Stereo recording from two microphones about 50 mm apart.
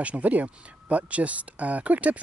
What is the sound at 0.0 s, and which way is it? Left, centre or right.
Speech, right.